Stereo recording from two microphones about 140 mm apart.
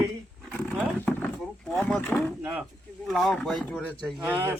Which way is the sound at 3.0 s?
Centre (ahead or behind).